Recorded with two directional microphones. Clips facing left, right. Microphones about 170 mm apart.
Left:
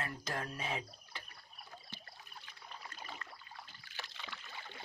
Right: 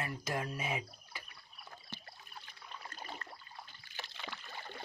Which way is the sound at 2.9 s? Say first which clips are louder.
Right 2 dB; 40° right (ahead or behind).